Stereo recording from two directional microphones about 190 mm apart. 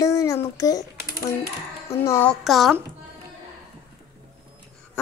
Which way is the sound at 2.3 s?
Centre (ahead or behind).